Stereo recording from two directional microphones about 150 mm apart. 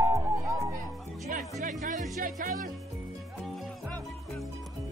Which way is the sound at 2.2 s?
70° right (ahead or behind).